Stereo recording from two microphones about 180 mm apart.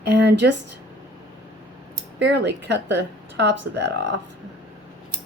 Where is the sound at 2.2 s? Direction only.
75° right (ahead or behind).